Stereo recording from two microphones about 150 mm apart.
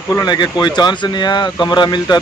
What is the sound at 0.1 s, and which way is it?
Speech, 25° left (ahead or behind).